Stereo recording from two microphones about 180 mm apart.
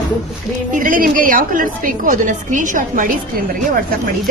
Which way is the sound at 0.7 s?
50° right (ahead or behind).